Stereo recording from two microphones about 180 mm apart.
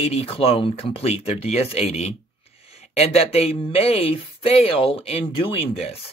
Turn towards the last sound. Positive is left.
turn(degrees=35)  # may be behind; listen again after turning